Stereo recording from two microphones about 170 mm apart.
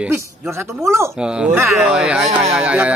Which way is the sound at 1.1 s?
5° right (ahead or behind).